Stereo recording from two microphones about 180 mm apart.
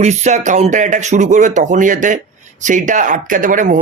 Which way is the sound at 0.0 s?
40° right (ahead or behind).